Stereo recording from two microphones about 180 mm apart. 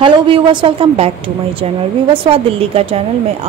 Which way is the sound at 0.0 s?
25° right (ahead or behind).